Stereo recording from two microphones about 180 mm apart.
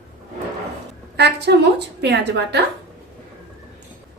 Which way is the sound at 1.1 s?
70° right (ahead or behind).